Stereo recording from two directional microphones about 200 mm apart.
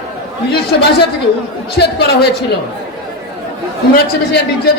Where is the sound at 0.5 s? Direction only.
55° left (ahead or behind).